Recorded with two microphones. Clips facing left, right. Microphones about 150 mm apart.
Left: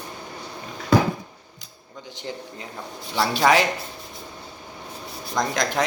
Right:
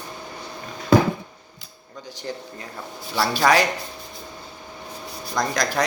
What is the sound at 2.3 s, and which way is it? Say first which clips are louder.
A man's voice: right 1 dB; 20° left (ahead or behind).